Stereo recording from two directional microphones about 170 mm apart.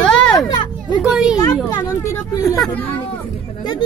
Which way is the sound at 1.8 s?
15° left (ahead or behind).